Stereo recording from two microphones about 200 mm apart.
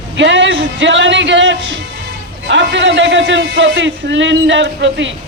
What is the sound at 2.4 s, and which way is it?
A man's voice, 60° right (ahead or behind).